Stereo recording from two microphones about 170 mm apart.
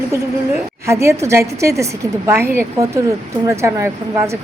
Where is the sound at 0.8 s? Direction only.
15° right (ahead or behind).